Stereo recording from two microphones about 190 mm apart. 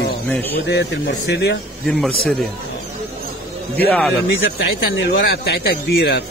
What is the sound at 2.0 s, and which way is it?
Speech, centre (ahead or behind).